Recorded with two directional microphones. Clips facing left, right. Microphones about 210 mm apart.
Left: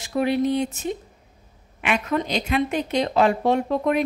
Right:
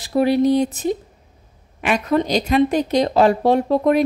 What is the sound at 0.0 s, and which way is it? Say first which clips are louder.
A woman's voice: right 5 dB; 35° right (ahead or behind).